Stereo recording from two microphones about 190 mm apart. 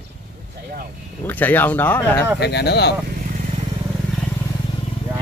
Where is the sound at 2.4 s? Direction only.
60° left (ahead or behind).